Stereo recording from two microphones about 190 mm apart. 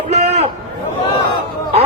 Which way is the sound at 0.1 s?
35° right (ahead or behind).